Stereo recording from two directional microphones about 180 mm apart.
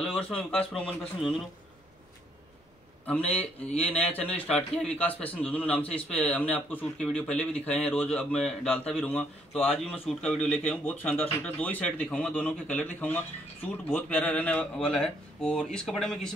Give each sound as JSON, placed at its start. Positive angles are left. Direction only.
{"t": 0.0, "sound": "a sound", "side_deg": 0}
{"t": 0.4, "sound": "a man's voice", "side_deg": 5}
{"t": 3.3, "sound": "a man's voice", "side_deg": 10}